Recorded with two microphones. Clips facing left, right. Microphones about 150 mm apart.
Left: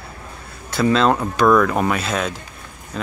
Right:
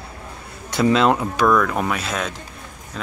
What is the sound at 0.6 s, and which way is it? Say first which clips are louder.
Speech: even; 15° right (ahead or behind).